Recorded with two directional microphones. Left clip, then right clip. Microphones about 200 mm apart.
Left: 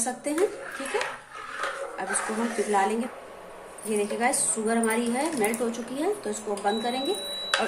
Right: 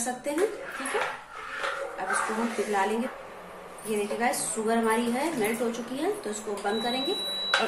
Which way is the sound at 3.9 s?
25° left (ahead or behind).